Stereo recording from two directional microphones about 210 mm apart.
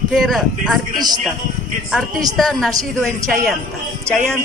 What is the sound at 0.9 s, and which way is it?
Speech, 20° right (ahead or behind).